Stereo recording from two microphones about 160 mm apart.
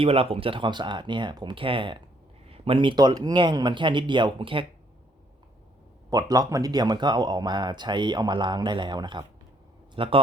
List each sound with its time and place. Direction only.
0.0 s speech: 35° right (ahead or behind)
6.1 s speech: 20° right (ahead or behind)